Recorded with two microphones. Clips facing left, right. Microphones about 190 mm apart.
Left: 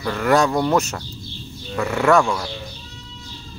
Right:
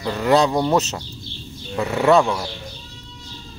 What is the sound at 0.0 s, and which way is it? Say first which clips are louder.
Speech: right 1 dB; 15° right (ahead or behind).